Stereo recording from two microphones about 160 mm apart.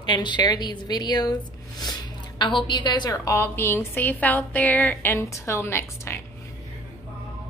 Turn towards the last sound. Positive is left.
turn(degrees=15)  # may be behind; listen again after turning